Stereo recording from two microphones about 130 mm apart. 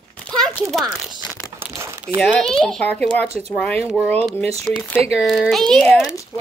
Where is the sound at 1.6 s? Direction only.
20° right (ahead or behind).